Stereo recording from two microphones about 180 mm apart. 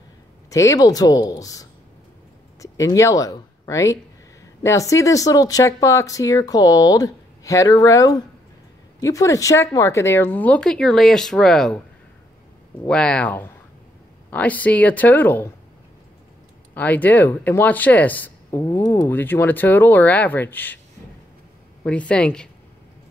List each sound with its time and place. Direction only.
0.5 s speech: 20° left (ahead or behind)
12.8 s speech: 5° left (ahead or behind)
16.7 s speech: 10° left (ahead or behind)
21.8 s a woman's voice: 5° left (ahead or behind)